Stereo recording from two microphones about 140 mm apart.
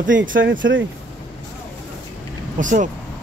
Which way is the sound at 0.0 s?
75° right (ahead or behind).